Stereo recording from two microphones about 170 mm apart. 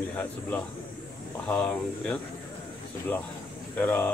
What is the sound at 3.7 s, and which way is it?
Speech, 10° left (ahead or behind).